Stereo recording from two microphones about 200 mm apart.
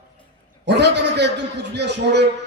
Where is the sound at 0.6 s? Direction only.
60° right (ahead or behind).